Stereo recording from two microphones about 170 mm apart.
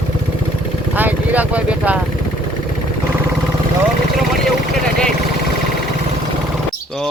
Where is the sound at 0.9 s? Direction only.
10° right (ahead or behind).